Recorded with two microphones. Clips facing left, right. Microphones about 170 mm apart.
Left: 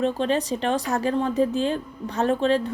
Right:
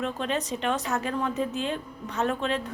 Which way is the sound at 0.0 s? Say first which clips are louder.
Left 6 dB; 30° left (ahead or behind).